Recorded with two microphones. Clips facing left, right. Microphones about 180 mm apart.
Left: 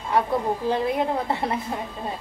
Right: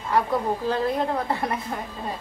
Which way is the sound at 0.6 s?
20° left (ahead or behind).